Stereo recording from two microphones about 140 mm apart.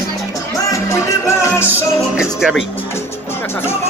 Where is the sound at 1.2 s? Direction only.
20° left (ahead or behind).